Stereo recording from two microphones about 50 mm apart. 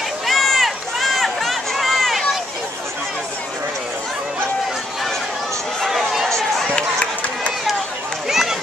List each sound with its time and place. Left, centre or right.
0.3 s run: centre
5.9 s run: centre
6.2 s run: centre
8.3 s run: centre